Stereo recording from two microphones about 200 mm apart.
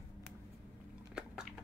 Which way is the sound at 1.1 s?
5° right (ahead or behind).